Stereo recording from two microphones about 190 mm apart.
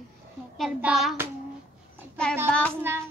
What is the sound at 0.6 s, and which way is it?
Speech, centre (ahead or behind).